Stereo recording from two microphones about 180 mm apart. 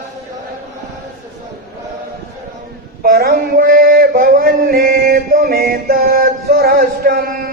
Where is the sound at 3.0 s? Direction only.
60° right (ahead or behind).